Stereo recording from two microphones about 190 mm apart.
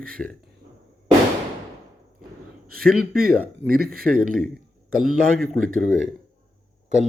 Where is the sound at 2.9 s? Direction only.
50° right (ahead or behind).